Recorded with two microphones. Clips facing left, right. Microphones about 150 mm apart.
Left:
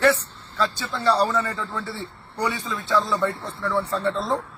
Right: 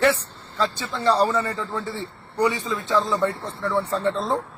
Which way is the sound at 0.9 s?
15° right (ahead or behind).